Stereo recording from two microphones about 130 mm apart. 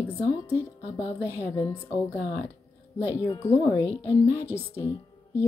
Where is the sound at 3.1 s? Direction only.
20° left (ahead or behind).